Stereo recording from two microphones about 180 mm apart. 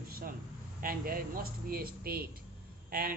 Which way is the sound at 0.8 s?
55° right (ahead or behind).